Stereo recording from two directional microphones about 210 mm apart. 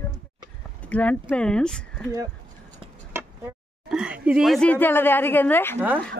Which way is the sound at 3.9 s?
5° right (ahead or behind).